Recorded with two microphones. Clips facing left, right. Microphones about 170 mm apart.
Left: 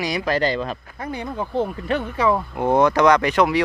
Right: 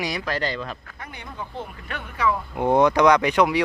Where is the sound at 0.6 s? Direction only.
30° left (ahead or behind).